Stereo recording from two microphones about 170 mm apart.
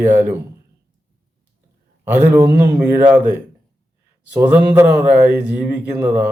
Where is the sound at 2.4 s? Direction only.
70° right (ahead or behind).